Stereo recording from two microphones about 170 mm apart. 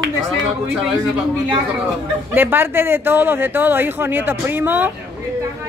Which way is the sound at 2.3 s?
10° right (ahead or behind).